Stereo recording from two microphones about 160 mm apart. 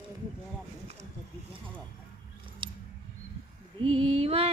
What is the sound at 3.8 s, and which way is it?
Mantra, 35° right (ahead or behind).